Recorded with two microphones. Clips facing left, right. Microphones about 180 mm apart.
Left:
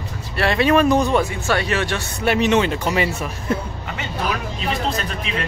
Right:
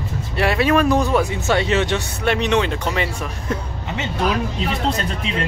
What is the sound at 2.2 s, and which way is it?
Speech, 5° left (ahead or behind).